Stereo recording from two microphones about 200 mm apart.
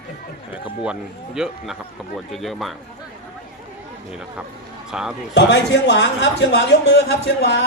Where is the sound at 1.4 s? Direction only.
Centre (ahead or behind).